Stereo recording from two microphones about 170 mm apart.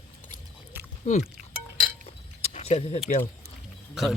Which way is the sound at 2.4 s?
40° left (ahead or behind).